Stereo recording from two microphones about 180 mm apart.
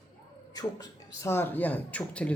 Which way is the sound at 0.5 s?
20° left (ahead or behind).